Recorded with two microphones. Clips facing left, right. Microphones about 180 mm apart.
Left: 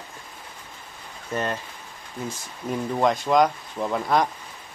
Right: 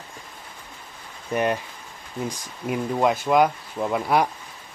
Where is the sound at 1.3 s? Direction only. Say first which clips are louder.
Right 4 dB; 15° right (ahead or behind).